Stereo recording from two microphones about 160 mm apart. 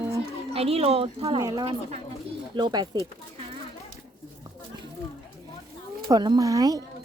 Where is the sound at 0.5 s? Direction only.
35° right (ahead or behind).